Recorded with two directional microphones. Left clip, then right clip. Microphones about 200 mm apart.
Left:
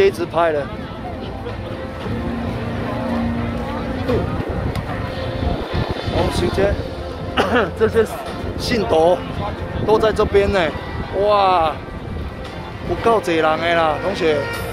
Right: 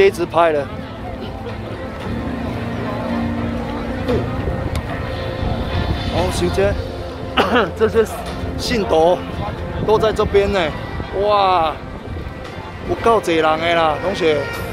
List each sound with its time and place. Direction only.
0.0 s speech: 20° right (ahead or behind)
4.1 s speech: 45° right (ahead or behind)
6.3 s speech: 15° right (ahead or behind); by 11.7 s 5° left (ahead or behind)
13.0 s speech: 10° right (ahead or behind)